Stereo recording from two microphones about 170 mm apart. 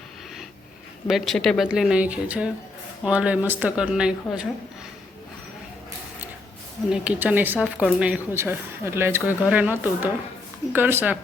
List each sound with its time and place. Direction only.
1.0 s speech: centre (ahead or behind)
6.9 s speech: 5° right (ahead or behind)